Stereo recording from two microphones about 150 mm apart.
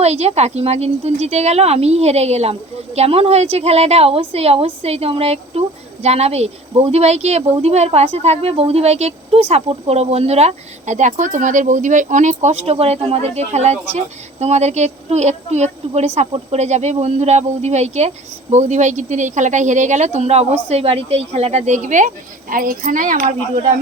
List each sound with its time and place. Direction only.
0.0 s speech: 45° right (ahead or behind); by 23.3 s 65° right (ahead or behind)